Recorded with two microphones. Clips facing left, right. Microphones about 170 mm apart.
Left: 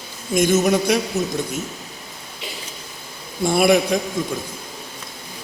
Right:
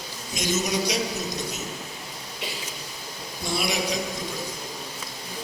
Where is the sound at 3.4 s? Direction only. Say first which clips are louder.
Left 12 dB; 55° left (ahead or behind).